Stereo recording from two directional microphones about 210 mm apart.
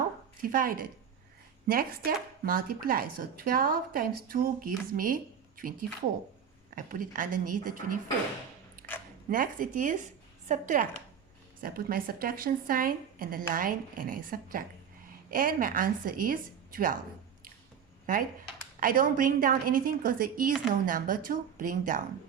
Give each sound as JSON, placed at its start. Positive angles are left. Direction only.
{"t": 0.4, "sound": "a woman's voice", "side_deg": -40}
{"t": 9.3, "sound": "a woman's voice", "side_deg": -40}
{"t": 18.0, "sound": "a woman's voice", "side_deg": -40}